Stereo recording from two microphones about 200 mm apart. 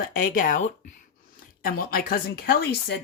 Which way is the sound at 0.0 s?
45° left (ahead or behind).